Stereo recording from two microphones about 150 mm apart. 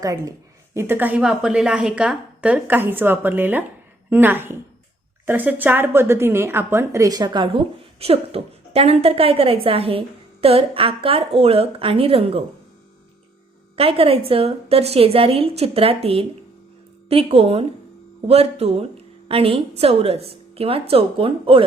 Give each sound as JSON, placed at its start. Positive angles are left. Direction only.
{"t": 0.0, "sound": "a woman's voice", "side_deg": -25}
{"t": 13.7, "sound": "a woman's voice", "side_deg": -40}